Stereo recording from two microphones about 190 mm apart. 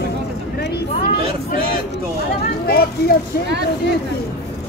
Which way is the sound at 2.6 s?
55° left (ahead or behind).